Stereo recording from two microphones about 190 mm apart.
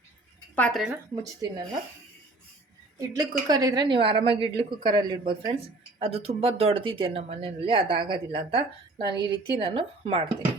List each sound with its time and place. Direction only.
0.5 s a woman's voice: 5° left (ahead or behind)
1.1 s speech: 20° right (ahead or behind)
3.2 s speech: 20° right (ahead or behind)